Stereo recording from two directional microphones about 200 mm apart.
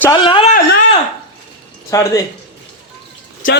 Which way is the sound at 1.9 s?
15° left (ahead or behind).